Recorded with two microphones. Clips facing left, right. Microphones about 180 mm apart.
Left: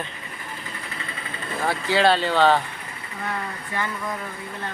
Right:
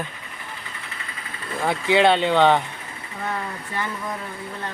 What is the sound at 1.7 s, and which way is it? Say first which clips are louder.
Speech: right 2 dB; 20° right (ahead or behind).